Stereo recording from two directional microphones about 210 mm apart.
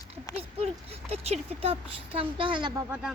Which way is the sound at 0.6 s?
30° right (ahead or behind).